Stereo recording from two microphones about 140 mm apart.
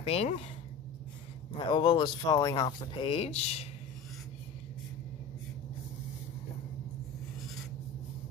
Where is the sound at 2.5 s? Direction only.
40° left (ahead or behind).